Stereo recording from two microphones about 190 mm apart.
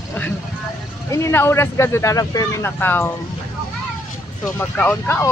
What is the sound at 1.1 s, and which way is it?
Speech, 15° left (ahead or behind).